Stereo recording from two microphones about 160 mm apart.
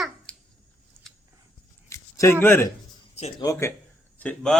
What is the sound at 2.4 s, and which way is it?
Speech, 15° left (ahead or behind).